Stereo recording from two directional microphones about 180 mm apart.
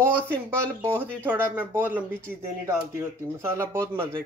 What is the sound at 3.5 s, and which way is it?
Speech, 15° right (ahead or behind).